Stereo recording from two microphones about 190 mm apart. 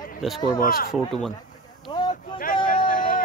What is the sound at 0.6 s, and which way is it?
Speech, 50° left (ahead or behind).